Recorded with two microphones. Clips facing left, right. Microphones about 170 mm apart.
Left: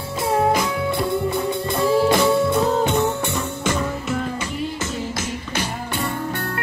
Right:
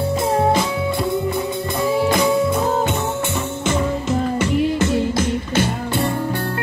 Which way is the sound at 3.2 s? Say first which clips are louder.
Right 2 dB; 25° right (ahead or behind).